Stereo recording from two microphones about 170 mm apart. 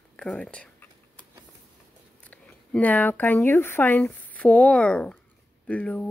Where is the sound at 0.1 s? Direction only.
5° left (ahead or behind).